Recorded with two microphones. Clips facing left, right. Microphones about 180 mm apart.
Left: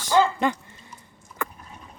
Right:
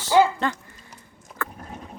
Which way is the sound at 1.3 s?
90° right.